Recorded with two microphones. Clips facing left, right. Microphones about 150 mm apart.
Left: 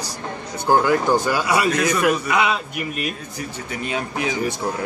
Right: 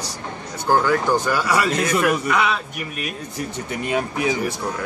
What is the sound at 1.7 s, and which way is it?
Speech, 25° right (ahead or behind).